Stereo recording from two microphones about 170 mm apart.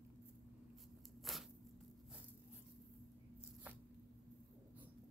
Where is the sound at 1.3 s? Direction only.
Centre (ahead or behind).